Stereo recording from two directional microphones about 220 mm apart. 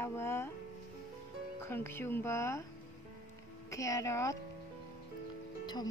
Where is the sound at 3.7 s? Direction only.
15° left (ahead or behind).